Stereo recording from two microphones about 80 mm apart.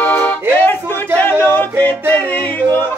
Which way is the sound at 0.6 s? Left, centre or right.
Left.